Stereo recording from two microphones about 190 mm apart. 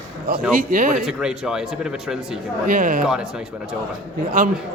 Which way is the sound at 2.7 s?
45° right (ahead or behind).